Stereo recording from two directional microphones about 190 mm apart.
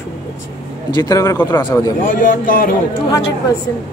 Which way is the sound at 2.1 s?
45° left (ahead or behind).